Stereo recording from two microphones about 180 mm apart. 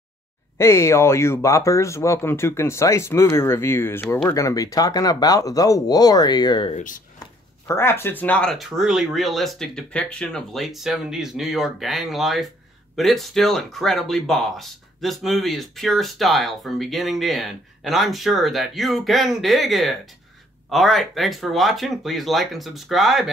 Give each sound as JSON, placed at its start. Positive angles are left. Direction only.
{"t": 0.6, "sound": "speech", "side_deg": 15}
{"t": 6.7, "sound": "speech", "side_deg": 45}
{"t": 7.2, "sound": "speech", "side_deg": 15}